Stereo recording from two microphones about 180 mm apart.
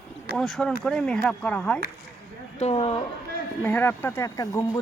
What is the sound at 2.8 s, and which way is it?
Speech, 30° left (ahead or behind).